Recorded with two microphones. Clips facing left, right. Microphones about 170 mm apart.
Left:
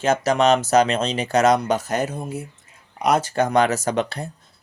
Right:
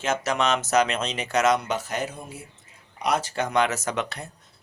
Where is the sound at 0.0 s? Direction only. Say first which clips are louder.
Left 7 dB; 35° left (ahead or behind).